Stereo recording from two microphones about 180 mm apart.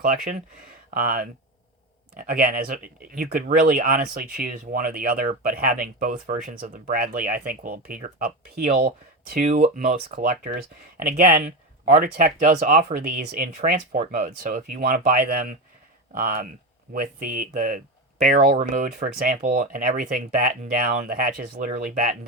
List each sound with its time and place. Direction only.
0.0 s speech: 45° right (ahead or behind)
9.3 s speech: 45° right (ahead or behind)